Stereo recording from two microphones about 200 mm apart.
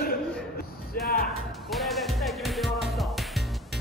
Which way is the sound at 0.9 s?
45° left (ahead or behind).